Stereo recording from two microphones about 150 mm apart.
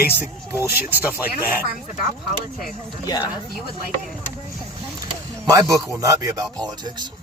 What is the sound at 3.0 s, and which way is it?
Speech, 25° left (ahead or behind).